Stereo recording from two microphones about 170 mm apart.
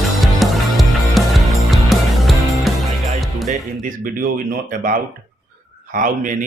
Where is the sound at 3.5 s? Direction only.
50° right (ahead or behind).